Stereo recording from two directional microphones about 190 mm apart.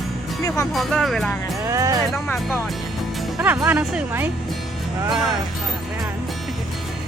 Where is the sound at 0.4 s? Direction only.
15° left (ahead or behind).